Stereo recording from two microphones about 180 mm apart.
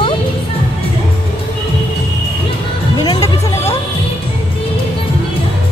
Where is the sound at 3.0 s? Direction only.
20° left (ahead or behind).